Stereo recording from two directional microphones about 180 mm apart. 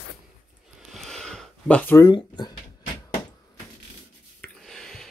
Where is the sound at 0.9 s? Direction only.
Centre (ahead or behind).